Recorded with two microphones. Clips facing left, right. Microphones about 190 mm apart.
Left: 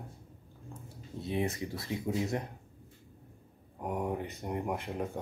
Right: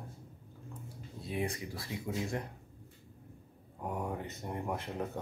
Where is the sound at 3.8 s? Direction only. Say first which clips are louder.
Left 4 dB; 15° left (ahead or behind).